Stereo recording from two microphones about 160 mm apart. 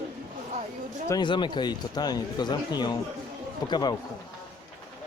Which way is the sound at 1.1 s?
30° left (ahead or behind).